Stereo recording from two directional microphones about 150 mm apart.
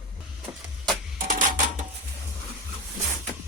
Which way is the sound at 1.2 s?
60° right (ahead or behind).